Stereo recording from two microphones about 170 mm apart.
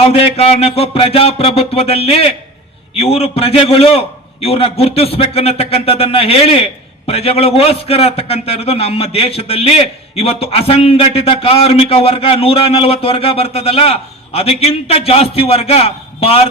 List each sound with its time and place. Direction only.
0.1 s a man's voice: 35° left (ahead or behind)